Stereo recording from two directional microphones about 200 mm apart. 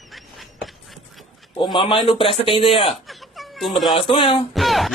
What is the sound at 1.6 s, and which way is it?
A man's voice, 25° left (ahead or behind).